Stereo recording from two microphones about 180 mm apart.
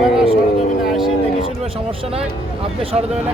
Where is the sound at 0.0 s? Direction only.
5° right (ahead or behind).